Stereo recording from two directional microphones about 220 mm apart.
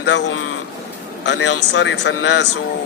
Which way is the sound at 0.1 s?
55° left (ahead or behind).